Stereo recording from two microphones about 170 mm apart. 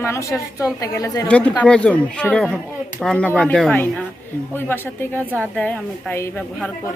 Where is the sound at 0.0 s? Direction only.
15° left (ahead or behind).